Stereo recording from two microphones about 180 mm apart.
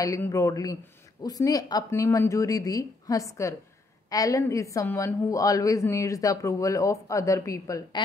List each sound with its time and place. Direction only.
0.0 s a man's voice: 20° left (ahead or behind)